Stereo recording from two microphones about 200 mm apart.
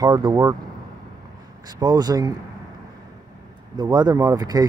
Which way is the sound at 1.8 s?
20° right (ahead or behind).